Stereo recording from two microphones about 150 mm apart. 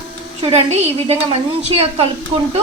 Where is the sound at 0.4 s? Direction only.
45° right (ahead or behind).